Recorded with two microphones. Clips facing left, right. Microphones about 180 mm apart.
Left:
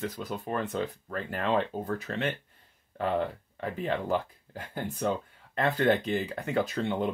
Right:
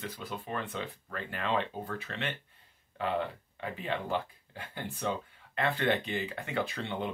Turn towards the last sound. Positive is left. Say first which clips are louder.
# left 5 dB
turn(degrees=45)  # may be behind; listen again after turning